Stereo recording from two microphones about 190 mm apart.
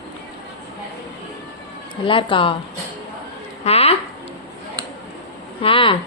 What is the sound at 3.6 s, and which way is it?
Speech, 30° left (ahead or behind).